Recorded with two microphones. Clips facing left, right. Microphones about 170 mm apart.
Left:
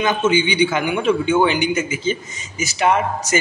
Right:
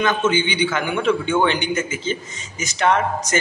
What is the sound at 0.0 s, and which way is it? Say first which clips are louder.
A man's voice: left 2 dB; 10° left (ahead or behind).